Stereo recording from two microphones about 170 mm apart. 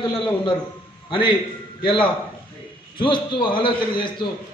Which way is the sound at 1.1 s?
30° left (ahead or behind).